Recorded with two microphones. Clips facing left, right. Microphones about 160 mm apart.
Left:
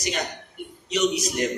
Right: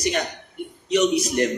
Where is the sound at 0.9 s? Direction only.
55° right (ahead or behind).